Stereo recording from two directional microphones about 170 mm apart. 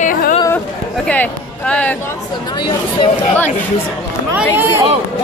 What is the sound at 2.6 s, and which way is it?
Speech, 25° left (ahead or behind).